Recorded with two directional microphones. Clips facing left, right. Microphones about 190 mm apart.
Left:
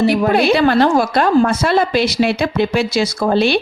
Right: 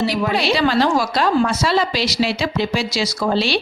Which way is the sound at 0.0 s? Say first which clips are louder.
Left 6 dB; 50° left (ahead or behind).